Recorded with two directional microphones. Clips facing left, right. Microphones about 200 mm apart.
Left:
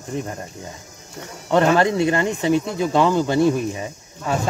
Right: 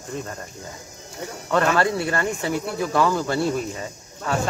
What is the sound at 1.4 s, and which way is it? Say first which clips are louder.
Speech: left 4 dB; 25° left (ahead or behind).